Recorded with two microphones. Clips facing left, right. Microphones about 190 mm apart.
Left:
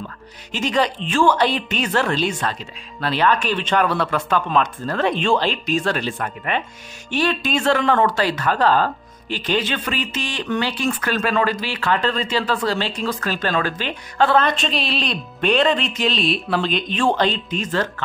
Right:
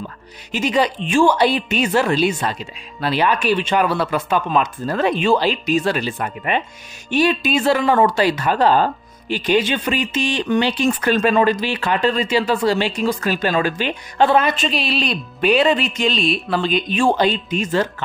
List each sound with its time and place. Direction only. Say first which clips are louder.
0.5 s speech: right 2 dB; 10° right (ahead or behind)
6.1 s speech: right 2 dB; 15° right (ahead or behind)